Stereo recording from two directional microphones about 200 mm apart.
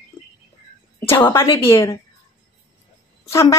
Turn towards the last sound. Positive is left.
turn(degrees=15)  # may be behind; listen again after turning